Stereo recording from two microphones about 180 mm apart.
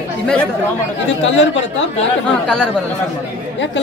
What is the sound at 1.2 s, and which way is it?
Speech, 90° left.